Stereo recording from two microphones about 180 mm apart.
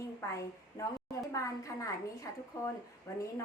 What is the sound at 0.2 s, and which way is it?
A woman's voice, 15° left (ahead or behind).